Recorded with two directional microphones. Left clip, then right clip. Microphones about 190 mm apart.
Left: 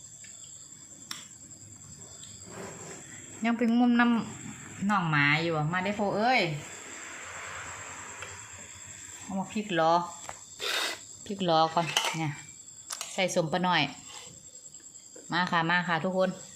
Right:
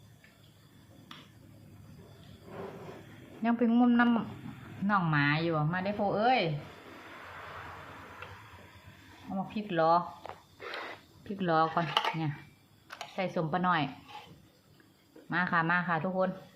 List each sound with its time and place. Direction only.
3.4 s a woman's voice: 10° left (ahead or behind)
9.6 s a woman's voice: 15° left (ahead or behind)
10.6 s cricket: 70° left (ahead or behind)
11.2 s a woman's voice: 5° left (ahead or behind)
15.3 s a woman's voice: 5° left (ahead or behind)